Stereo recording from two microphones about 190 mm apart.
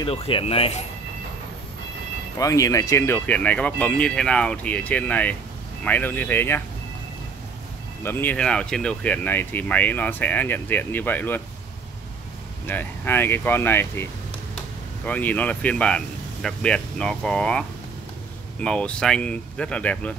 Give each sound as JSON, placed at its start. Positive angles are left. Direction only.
{"t": 0.0, "sound": "speech", "side_deg": 30}
{"t": 2.3, "sound": "speech", "side_deg": 15}
{"t": 8.0, "sound": "speech", "side_deg": 10}
{"t": 12.6, "sound": "speech", "side_deg": 10}
{"t": 15.0, "sound": "speech", "side_deg": 10}